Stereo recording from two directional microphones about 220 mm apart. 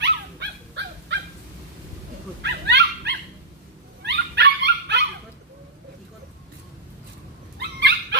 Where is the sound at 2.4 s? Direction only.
50° right (ahead or behind).